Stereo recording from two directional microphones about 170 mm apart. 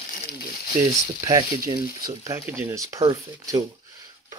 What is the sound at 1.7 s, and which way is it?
Speech, 20° right (ahead or behind).